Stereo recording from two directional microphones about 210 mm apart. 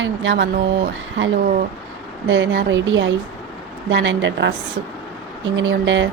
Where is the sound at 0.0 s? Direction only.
65° right (ahead or behind).